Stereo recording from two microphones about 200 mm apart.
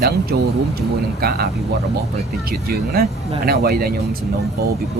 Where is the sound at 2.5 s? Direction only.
50° right (ahead or behind).